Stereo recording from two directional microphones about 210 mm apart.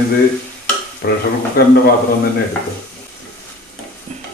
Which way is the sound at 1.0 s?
50° left (ahead or behind).